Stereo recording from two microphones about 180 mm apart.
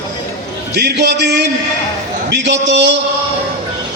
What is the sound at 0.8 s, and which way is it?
Music, 70° right (ahead or behind).